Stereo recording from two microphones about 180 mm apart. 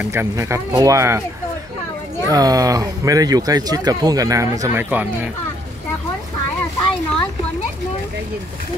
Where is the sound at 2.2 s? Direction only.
20° right (ahead or behind).